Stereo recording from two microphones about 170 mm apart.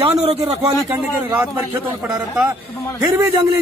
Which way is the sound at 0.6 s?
15° right (ahead or behind).